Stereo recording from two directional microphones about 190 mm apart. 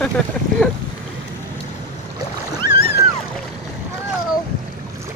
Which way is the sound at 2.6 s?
20° right (ahead or behind).